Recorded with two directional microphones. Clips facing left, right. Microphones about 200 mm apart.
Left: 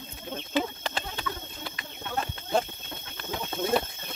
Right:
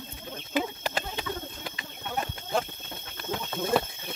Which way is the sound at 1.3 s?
25° right (ahead or behind).